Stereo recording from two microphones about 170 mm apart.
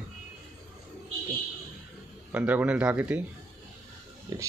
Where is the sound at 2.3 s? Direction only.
10° right (ahead or behind).